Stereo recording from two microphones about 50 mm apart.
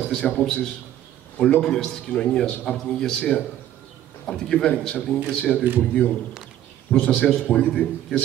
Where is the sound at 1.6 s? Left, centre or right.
Centre.